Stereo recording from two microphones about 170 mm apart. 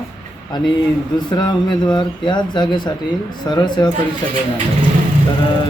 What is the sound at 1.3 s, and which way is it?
Speech, 25° left (ahead or behind).